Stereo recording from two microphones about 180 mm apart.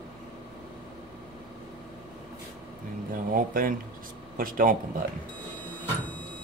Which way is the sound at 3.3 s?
50° right (ahead or behind).